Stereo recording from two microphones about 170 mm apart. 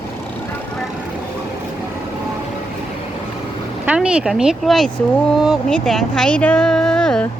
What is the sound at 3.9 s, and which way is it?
Speech, 5° right (ahead or behind).